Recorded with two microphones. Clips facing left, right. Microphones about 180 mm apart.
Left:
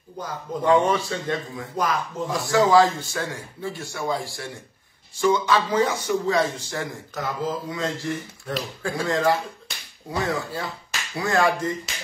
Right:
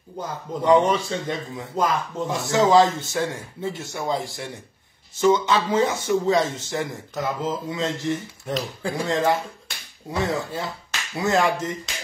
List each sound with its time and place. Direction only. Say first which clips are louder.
0.2 s speech: even; 20° right (ahead or behind)